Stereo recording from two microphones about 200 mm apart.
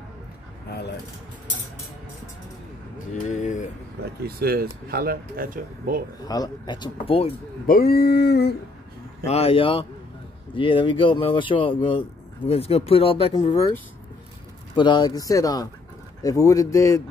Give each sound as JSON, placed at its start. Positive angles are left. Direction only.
{"t": 3.3, "sound": "a sound", "side_deg": 40}
{"t": 4.4, "sound": "speech", "side_deg": -50}
{"t": 6.2, "sound": "speech", "side_deg": 20}
{"t": 7.6, "sound": "a sound", "side_deg": 45}
{"t": 9.2, "sound": "speech", "side_deg": 30}
{"t": 14.8, "sound": "speech", "side_deg": 20}